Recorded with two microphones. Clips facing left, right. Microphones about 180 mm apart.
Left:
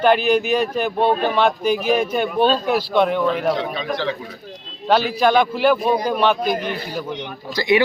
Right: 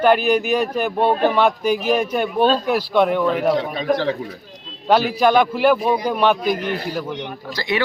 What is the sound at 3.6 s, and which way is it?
Speech, 40° right (ahead or behind).